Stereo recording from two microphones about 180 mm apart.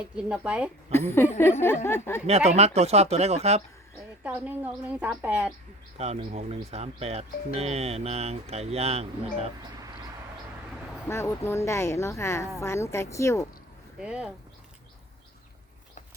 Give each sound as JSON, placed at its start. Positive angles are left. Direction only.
{"t": 0.2, "sound": "a woman's voice", "side_deg": -5}
{"t": 0.9, "sound": "speech", "side_deg": 15}
{"t": 2.2, "sound": "speech", "side_deg": -35}
{"t": 4.2, "sound": "a woman's voice", "side_deg": -10}
{"t": 6.0, "sound": "speech", "side_deg": -35}
{"t": 11.1, "sound": "speech", "side_deg": 15}
{"t": 14.0, "sound": "speech", "side_deg": -5}